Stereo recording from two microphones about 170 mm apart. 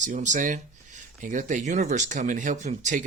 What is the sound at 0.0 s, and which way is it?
Speech, 45° right (ahead or behind).